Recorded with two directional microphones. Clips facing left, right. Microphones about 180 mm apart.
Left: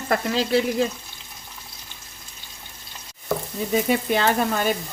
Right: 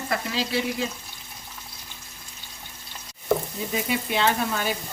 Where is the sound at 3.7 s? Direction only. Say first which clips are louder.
Left 6 dB; 45° left (ahead or behind).